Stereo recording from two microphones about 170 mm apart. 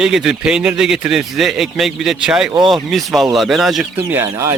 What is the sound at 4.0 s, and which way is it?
Speech, 10° right (ahead or behind).